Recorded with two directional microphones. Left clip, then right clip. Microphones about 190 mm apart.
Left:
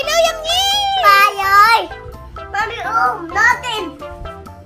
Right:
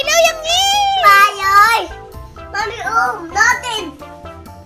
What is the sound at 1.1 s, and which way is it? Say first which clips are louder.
Child singing: even; 40° left (ahead or behind).